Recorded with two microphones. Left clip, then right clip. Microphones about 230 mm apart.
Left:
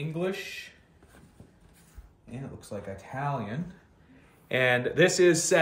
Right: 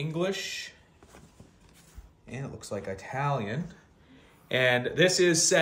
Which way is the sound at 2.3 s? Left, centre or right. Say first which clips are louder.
Right 3 dB; right.